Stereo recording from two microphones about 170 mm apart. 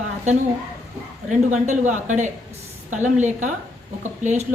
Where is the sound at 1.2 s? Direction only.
45° right (ahead or behind).